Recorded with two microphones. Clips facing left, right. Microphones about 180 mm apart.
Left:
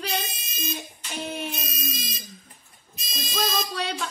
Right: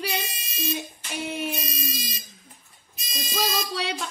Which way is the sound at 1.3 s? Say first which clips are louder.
Right 4 dB; centre (ahead or behind).